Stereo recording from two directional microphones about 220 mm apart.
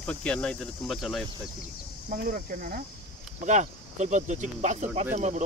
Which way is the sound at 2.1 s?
40° right (ahead or behind).